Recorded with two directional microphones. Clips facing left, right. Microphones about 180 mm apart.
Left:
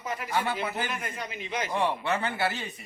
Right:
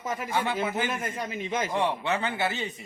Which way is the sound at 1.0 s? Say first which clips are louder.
Right 4 dB; 45° right (ahead or behind).